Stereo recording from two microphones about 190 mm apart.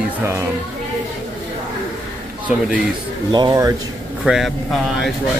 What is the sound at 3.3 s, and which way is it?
Speech, 20° right (ahead or behind).